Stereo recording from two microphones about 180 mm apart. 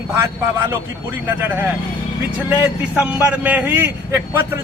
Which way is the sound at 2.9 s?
10° right (ahead or behind).